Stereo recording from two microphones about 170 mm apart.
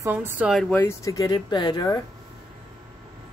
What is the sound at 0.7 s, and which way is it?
Speech, 15° left (ahead or behind).